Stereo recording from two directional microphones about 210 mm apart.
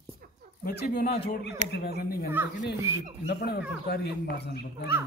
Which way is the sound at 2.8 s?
15° right (ahead or behind).